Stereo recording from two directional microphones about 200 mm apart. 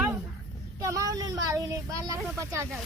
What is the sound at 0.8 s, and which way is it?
Speech, 15° right (ahead or behind).